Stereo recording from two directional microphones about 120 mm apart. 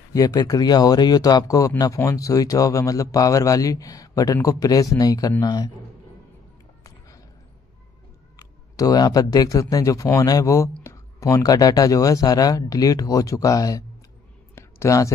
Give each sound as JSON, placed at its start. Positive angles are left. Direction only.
{"t": 0.1, "sound": "a man's voice", "side_deg": 30}
{"t": 8.4, "sound": "a man's voice", "side_deg": 30}
{"t": 14.5, "sound": "a sound", "side_deg": 25}